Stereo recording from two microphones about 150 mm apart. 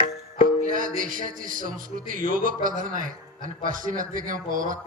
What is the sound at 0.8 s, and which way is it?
A man's voice, 65° right (ahead or behind).